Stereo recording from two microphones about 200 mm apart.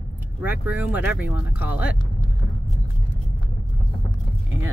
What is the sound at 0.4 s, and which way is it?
Speech, 10° right (ahead or behind).